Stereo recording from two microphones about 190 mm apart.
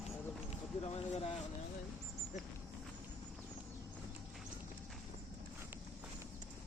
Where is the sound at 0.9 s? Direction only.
30° left (ahead or behind).